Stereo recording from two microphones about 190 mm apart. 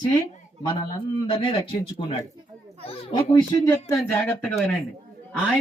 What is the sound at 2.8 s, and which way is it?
Speech, 25° left (ahead or behind).